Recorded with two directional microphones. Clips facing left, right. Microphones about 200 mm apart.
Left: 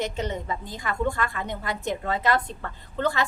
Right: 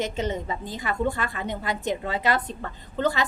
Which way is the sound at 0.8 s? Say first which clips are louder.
Even; 15° right (ahead or behind).